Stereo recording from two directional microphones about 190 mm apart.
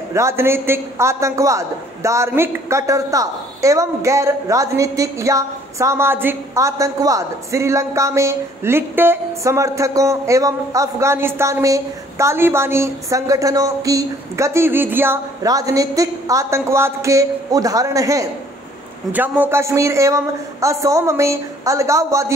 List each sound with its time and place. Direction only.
0.1 s a man's voice: 15° right (ahead or behind)